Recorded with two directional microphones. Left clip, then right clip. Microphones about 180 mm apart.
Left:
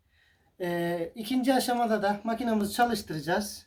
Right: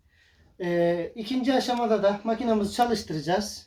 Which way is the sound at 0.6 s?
55° left (ahead or behind).